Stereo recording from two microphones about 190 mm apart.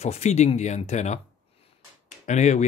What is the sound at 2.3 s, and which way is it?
Speech, 40° left (ahead or behind).